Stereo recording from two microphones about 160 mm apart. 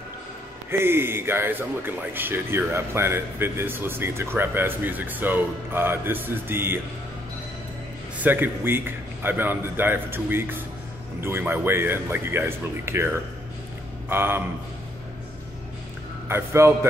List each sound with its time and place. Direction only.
0.7 s a man's voice: 15° right (ahead or behind)
8.2 s a man's voice: 10° right (ahead or behind)
16.3 s a man's voice: 15° right (ahead or behind)